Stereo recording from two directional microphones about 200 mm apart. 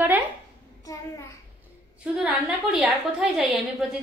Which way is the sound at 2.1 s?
5° right (ahead or behind).